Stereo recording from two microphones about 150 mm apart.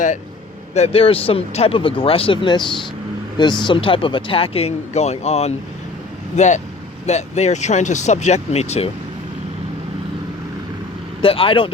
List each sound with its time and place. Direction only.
0.7 s speech: 45° left (ahead or behind)
11.2 s speech: 35° left (ahead or behind)